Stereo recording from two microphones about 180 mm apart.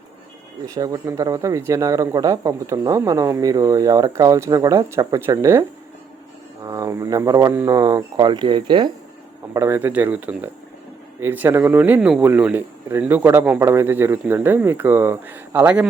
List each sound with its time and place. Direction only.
0.6 s speech: 20° right (ahead or behind)
6.7 s speech: 20° right (ahead or behind)
9.5 s speech: 15° right (ahead or behind)